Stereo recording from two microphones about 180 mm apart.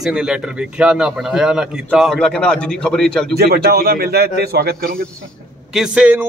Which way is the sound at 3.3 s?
60° right (ahead or behind).